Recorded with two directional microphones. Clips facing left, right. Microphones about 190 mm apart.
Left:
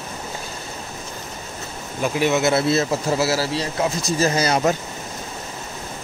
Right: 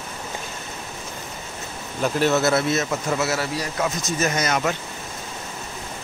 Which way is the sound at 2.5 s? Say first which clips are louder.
Left 2 dB; 30° left (ahead or behind).